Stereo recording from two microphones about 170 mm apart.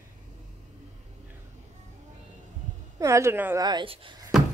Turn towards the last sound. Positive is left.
turn(degrees=-30)  # may be behind; listen again after turning